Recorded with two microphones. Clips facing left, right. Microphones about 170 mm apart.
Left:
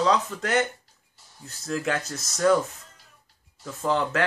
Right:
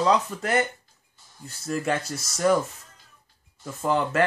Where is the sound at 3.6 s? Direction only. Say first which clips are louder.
Right 1 dB; 5° right (ahead or behind).